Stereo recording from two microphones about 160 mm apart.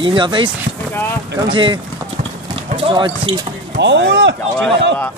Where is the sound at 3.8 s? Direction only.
90° right.